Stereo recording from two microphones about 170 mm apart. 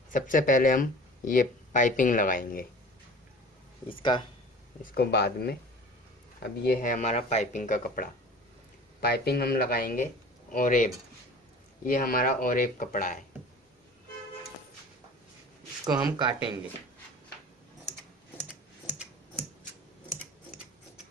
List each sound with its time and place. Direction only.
0.1 s speech: 50° left (ahead or behind)
3.9 s speech: 30° left (ahead or behind)
4.9 s speech: 70° left (ahead or behind)
6.6 s speech: 55° left (ahead or behind)
9.0 s speech: 70° left (ahead or behind); by 13.2 s 50° left (ahead or behind)
15.8 s speech: 20° right (ahead or behind)